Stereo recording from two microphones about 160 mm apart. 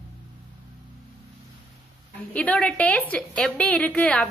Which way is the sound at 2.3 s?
5° left (ahead or behind).